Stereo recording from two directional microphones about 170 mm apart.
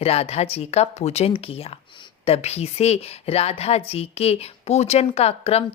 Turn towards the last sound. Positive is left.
turn(degrees=35)  # may be behind; listen again after turning